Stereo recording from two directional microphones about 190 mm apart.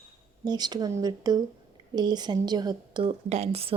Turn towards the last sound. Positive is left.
turn(degrees=-30)  # may be behind; listen again after turning